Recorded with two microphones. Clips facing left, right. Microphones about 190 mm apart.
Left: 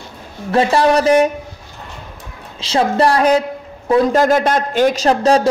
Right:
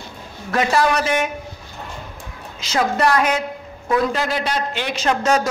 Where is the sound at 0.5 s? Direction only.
30° left (ahead or behind).